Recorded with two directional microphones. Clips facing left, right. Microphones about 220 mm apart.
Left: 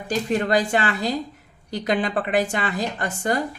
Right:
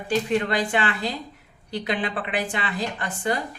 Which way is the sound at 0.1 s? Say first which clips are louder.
Left 2 dB; 40° left (ahead or behind).